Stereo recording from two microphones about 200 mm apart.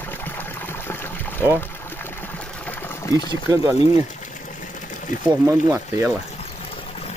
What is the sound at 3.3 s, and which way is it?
Speech, 15° right (ahead or behind).